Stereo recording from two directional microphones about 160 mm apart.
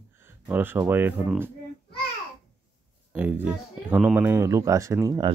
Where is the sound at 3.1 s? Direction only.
10° right (ahead or behind).